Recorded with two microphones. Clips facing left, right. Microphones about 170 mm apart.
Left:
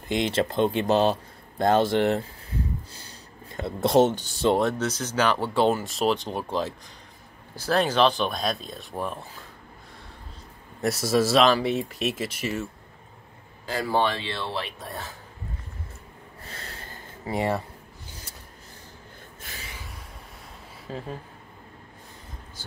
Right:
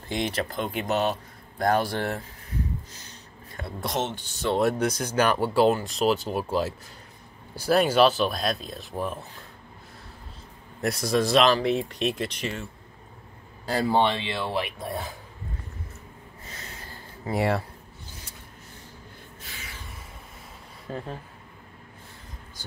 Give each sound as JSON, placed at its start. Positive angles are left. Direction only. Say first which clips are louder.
{"t": 0.1, "sound": "speech", "louder": "left 4 dB", "side_deg": 25}
{"t": 2.9, "sound": "a sound", "louder": "left 1 dB", "side_deg": 30}
{"t": 4.6, "sound": "speech", "louder": "right 1 dB", "side_deg": -10}
{"t": 10.8, "sound": "speech", "louder": "left 2 dB", "side_deg": 0}
{"t": 13.8, "sound": "speech", "louder": "right 1 dB", "side_deg": -20}
{"t": 16.5, "sound": "a sound", "louder": "left 2 dB", "side_deg": 55}
{"t": 17.3, "sound": "speech", "louder": "right 1 dB", "side_deg": -10}